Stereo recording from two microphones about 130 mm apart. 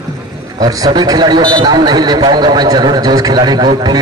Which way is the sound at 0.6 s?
30° right (ahead or behind).